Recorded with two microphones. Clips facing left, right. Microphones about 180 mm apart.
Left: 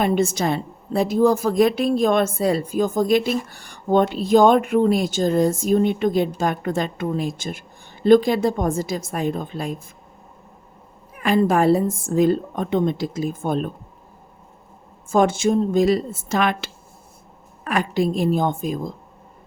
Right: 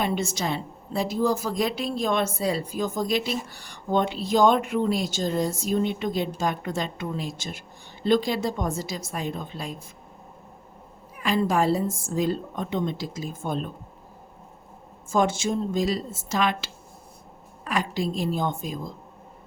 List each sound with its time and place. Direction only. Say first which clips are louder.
0.0 s a woman's voice: left 7 dB; 50° left (ahead or behind)
11.2 s a woman's voice: left 5 dB; 55° left (ahead or behind)
15.1 s a woman's voice: left 6 dB; 55° left (ahead or behind)